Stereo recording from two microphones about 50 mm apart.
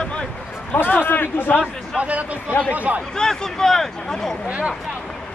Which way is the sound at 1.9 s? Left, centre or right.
Right.